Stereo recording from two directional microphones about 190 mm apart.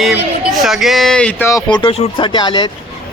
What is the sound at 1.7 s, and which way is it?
Speech, 25° left (ahead or behind).